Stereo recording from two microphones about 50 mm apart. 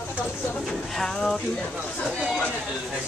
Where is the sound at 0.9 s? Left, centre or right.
Centre.